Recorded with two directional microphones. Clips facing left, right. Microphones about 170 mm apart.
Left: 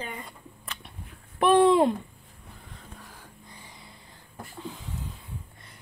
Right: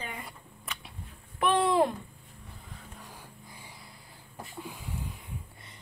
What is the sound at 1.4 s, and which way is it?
Speech, 30° left (ahead or behind).